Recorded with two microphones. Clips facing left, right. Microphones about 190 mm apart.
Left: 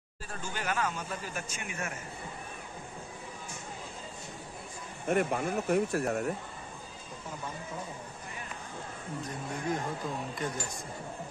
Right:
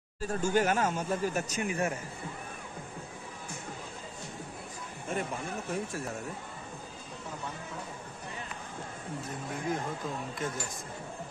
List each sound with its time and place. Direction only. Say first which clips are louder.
0.2 s a man's voice: right 11 dB; 45° right (ahead or behind)
5.0 s speech: left 6 dB; 65° left (ahead or behind)
10.4 s speech: even; 5° right (ahead or behind)